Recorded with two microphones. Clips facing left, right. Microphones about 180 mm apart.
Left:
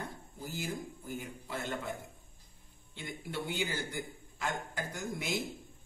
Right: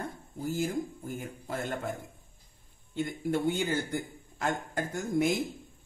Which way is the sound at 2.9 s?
45° right (ahead or behind).